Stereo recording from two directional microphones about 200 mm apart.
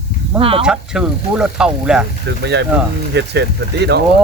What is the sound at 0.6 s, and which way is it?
Speech, 5° right (ahead or behind).